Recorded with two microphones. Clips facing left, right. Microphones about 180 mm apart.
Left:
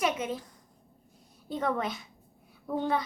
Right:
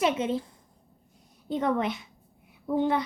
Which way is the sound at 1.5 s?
20° right (ahead or behind).